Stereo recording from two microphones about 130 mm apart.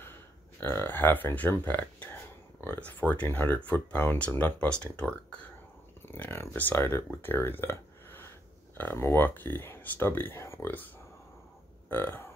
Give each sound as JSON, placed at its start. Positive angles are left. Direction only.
{"t": 0.6, "sound": "speech", "side_deg": 20}
{"t": 11.9, "sound": "speech", "side_deg": 15}